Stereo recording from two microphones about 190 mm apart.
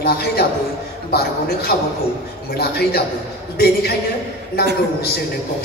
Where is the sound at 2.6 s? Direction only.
55° left (ahead or behind).